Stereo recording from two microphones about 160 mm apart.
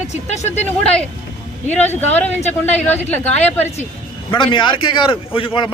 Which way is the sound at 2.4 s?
45° left (ahead or behind).